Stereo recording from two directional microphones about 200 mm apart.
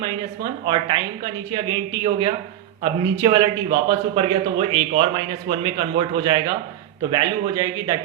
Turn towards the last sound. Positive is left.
turn(degrees=-20)  # may be behind; listen again after turning